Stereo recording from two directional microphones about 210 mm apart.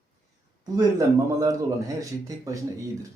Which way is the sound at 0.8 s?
15° right (ahead or behind).